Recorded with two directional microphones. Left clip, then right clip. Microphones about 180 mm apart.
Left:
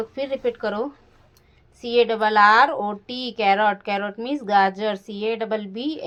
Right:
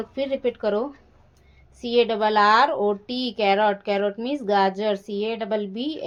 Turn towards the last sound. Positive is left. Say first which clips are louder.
# even
turn(degrees=15)  # may be behind; listen again after turning